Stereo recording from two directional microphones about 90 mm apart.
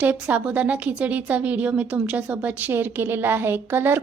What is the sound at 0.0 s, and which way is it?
A woman's voice, 15° right (ahead or behind).